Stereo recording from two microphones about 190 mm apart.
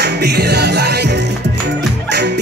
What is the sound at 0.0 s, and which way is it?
Music, 60° right (ahead or behind).